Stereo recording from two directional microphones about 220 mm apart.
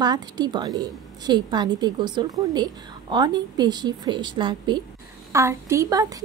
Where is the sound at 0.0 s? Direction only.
20° right (ahead or behind).